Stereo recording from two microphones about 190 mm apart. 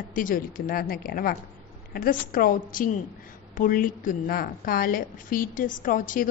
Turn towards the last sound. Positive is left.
turn(degrees=45)  # may be behind; listen again after turning